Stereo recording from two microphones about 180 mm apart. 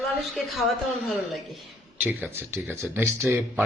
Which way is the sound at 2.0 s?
10° right (ahead or behind).